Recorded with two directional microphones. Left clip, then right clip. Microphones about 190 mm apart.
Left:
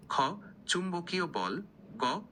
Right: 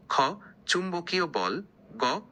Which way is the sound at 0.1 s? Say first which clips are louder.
Right 5 dB; 30° right (ahead or behind).